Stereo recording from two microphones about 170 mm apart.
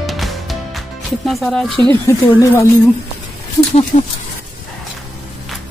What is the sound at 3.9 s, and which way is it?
Speech, 50° left (ahead or behind).